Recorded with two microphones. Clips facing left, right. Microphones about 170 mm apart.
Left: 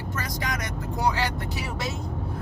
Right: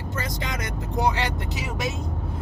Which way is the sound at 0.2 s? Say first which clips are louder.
Right 1 dB; 25° right (ahead or behind).